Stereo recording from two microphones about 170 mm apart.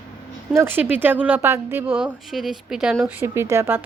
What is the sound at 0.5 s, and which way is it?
Speech, 10° right (ahead or behind).